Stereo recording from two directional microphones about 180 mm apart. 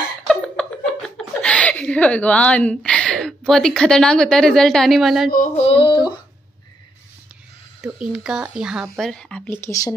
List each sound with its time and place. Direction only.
0.3 s speech: 5° left (ahead or behind)
5.6 s a sound: 30° left (ahead or behind)
7.8 s speech: 5° right (ahead or behind)
9.5 s speech: 15° left (ahead or behind)